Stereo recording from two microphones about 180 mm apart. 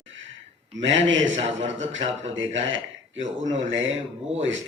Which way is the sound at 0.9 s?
90° right.